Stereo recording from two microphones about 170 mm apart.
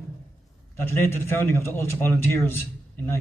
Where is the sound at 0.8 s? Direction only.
15° left (ahead or behind).